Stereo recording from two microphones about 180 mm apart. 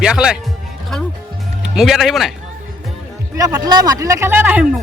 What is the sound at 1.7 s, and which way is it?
Speech, centre (ahead or behind).